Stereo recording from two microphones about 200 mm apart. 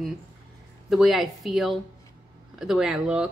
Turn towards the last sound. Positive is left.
turn(degrees=-5)  # may be behind; listen again after turning